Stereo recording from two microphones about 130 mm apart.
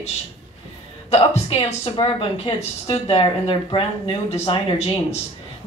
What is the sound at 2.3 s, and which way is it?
Speech, 50° left (ahead or behind).